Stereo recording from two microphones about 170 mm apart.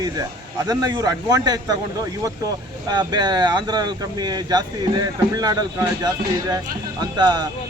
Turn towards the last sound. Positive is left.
turn(degrees=-25)  # may be behind; listen again after turning